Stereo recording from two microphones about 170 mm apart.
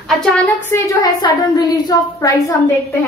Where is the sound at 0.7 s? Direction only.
20° left (ahead or behind).